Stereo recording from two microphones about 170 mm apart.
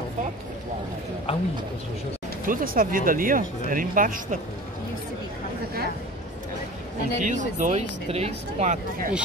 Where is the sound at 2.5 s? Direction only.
55° right (ahead or behind).